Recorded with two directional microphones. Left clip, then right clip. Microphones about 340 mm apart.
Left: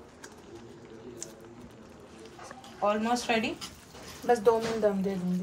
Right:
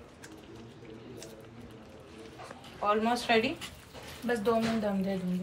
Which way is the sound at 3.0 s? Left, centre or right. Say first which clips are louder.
Right 1 dB; centre.